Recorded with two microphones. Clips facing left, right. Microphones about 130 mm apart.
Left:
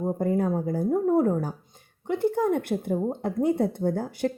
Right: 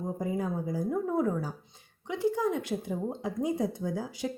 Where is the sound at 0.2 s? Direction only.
60° left (ahead or behind).